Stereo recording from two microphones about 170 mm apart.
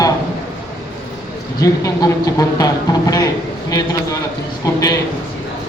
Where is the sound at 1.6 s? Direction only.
20° left (ahead or behind).